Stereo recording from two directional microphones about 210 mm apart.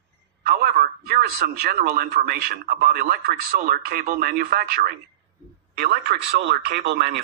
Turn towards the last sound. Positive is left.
turn(degrees=-50)  # may be behind; listen again after turning